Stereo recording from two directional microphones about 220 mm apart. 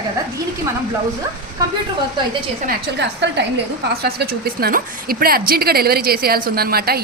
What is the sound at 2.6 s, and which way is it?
A woman's voice, 50° right (ahead or behind).